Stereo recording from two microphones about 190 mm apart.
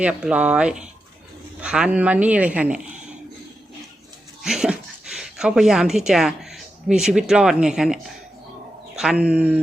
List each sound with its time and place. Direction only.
0.0 s speech: 5° right (ahead or behind)
4.4 s speech: 5° right (ahead or behind)
9.0 s speech: 5° right (ahead or behind)